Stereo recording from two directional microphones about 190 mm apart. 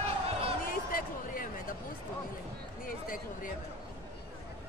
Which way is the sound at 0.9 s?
50° left (ahead or behind).